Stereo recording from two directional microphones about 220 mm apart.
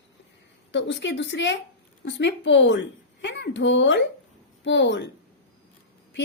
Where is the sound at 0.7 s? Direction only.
55° left (ahead or behind).